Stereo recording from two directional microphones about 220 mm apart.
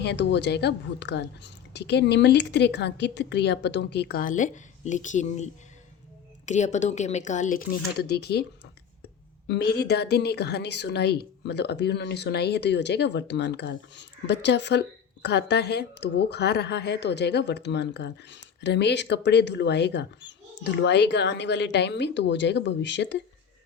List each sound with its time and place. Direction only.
0.0 s a woman's voice: 50° left (ahead or behind)
7.9 s a woman's voice: 45° left (ahead or behind)
9.5 s a woman's voice: 45° left (ahead or behind)